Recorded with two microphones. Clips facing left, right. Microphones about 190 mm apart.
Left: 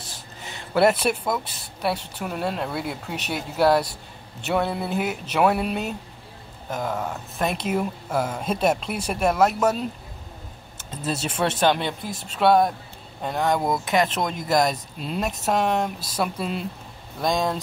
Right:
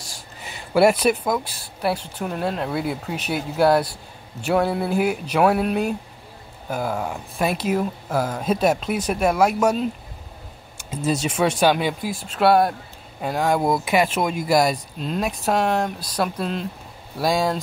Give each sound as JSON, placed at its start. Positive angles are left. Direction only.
{"t": 1.1, "sound": "speech", "side_deg": 5}
{"t": 8.5, "sound": "speech", "side_deg": -5}
{"t": 10.9, "sound": "speech", "side_deg": -10}